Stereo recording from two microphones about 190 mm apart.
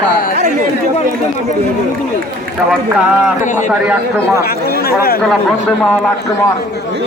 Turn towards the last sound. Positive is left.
turn(degrees=5)  # may be behind; listen again after turning